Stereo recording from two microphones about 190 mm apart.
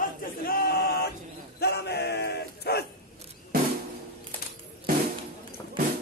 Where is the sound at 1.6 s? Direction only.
60° left (ahead or behind).